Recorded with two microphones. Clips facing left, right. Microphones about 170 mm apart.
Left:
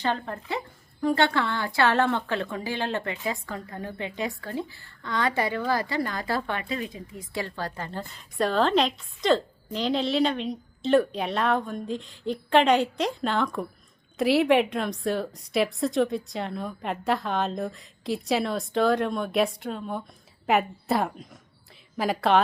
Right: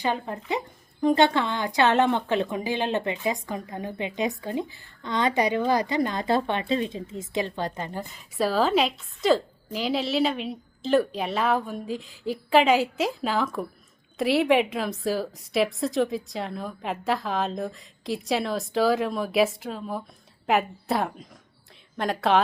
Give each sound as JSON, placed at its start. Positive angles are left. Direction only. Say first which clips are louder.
{"t": 0.0, "sound": "speech", "louder": "right 1 dB", "side_deg": -15}
{"t": 8.1, "sound": "a woman's voice", "louder": "even", "side_deg": -5}